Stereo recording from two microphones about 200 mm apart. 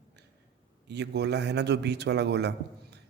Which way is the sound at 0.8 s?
55° right (ahead or behind).